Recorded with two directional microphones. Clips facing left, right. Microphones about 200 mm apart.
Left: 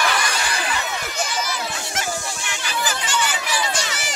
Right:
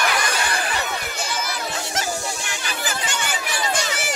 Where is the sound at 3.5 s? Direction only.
55° right (ahead or behind).